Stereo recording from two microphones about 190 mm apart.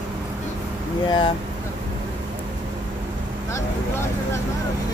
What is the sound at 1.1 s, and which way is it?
Speech, 25° left (ahead or behind).